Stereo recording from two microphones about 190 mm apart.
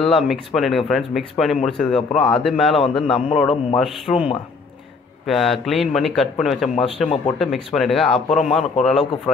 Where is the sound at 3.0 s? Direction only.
30° left (ahead or behind).